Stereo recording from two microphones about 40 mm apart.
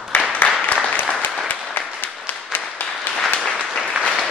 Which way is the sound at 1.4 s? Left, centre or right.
Left.